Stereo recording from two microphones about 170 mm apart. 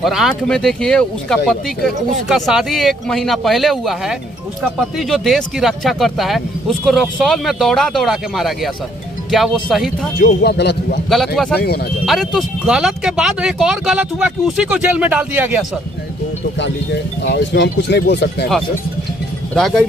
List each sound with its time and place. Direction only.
0.0 s speech: centre (ahead or behind)
10.2 s speech: 70° left (ahead or behind)
11.1 s speech: centre (ahead or behind)
17.2 s speech: 90° left
19.5 s speech: centre (ahead or behind)